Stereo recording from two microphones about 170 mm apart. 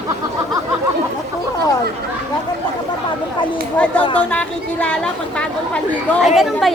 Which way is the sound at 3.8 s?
5° left (ahead or behind).